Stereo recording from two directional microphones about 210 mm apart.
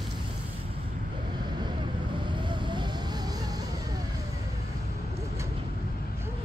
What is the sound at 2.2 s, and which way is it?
Vehicle, 20° right (ahead or behind).